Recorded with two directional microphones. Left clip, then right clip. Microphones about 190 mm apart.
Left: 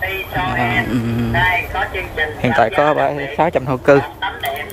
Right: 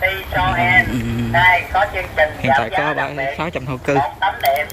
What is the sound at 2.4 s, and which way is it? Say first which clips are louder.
Speech: left 3 dB; 20° left (ahead or behind).